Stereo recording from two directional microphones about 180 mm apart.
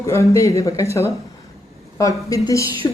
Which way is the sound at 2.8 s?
20° left (ahead or behind).